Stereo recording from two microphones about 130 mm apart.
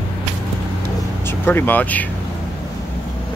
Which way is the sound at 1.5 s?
15° left (ahead or behind).